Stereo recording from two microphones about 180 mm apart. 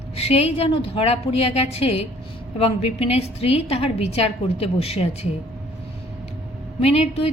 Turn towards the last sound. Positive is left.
turn(degrees=35)  # may be behind; listen again after turning